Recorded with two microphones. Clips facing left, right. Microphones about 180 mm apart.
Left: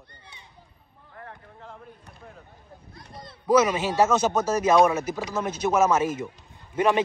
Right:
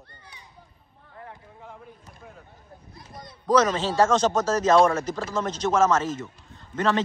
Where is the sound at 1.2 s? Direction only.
5° right (ahead or behind).